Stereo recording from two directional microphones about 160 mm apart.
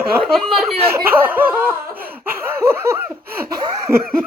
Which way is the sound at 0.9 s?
15° right (ahead or behind).